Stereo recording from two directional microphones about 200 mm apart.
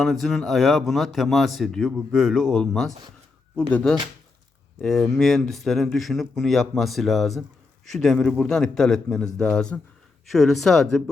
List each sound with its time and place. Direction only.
0.0 s speech: centre (ahead or behind)